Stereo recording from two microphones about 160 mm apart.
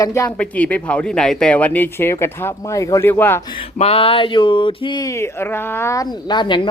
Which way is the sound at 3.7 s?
40° left (ahead or behind).